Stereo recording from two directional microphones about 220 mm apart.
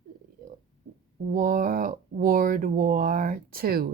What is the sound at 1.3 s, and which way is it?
Speech, 40° right (ahead or behind).